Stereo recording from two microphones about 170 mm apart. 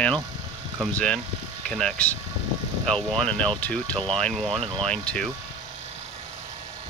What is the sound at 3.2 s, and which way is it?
Speech, 5° left (ahead or behind).